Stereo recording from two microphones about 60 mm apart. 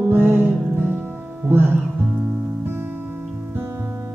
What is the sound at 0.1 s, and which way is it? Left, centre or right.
Music, right.